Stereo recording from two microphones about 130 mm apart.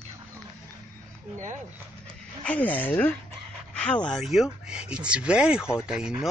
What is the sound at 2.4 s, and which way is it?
Speech, 10° left (ahead or behind).